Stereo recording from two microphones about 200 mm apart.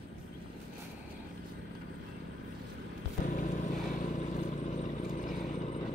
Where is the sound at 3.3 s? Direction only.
40° left (ahead or behind).